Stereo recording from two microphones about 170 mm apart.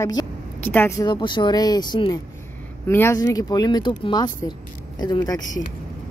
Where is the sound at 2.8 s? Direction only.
15° left (ahead or behind).